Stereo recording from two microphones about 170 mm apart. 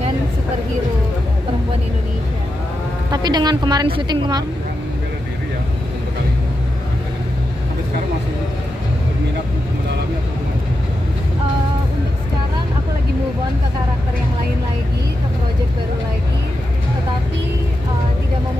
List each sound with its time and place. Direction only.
3.1 s a woman's voice: 25° right (ahead or behind)